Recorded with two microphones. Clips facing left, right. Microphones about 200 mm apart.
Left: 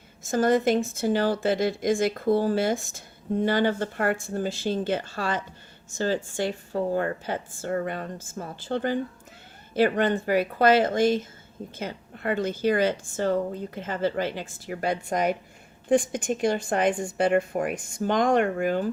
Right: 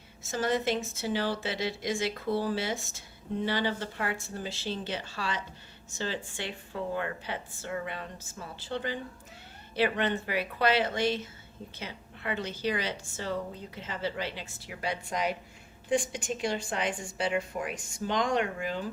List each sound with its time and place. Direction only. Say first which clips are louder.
0.2 s a woman's voice: left 8 dB; 50° left (ahead or behind)